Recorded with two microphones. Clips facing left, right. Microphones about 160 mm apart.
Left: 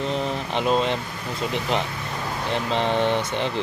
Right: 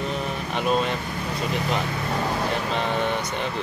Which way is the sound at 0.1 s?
25° left (ahead or behind).